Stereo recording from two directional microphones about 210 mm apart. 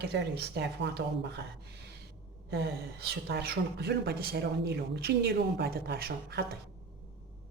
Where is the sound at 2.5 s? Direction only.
50° right (ahead or behind).